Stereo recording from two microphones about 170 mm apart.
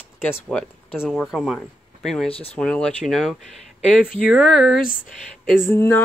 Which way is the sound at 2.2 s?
35° left (ahead or behind).